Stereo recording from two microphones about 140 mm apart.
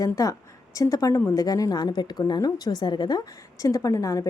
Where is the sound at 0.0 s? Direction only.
25° left (ahead or behind).